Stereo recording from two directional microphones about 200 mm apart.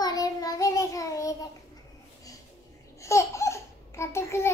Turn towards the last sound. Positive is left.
turn(degrees=15)  # may be behind; listen again after turning